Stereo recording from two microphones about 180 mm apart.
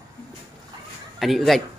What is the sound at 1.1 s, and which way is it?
Speech, centre (ahead or behind).